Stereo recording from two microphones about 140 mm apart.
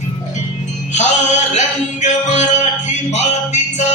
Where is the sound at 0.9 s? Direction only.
60° left (ahead or behind).